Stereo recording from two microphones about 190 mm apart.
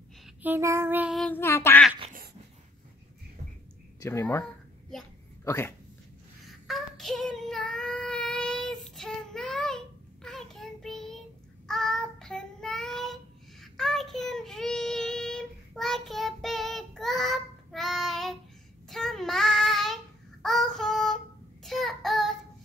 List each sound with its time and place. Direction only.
0.4 s female singing: 10° right (ahead or behind)
1.3 s quack: 15° left (ahead or behind)
4.0 s quack: 15° left (ahead or behind)
5.4 s speech: 15° left (ahead or behind)
6.4 s child singing: centre (ahead or behind)